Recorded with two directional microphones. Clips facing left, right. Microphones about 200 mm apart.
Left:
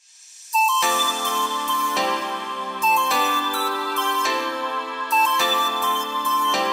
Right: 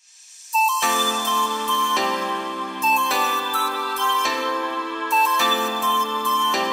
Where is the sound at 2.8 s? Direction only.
Centre (ahead or behind).